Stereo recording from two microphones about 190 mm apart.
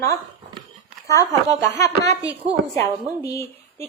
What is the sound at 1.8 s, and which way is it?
Speech, 15° left (ahead or behind).